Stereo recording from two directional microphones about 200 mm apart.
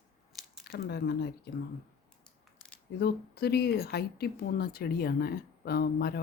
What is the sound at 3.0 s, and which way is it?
Speech, 50° left (ahead or behind).